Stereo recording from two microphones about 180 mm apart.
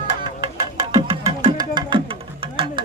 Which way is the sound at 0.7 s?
20° right (ahead or behind).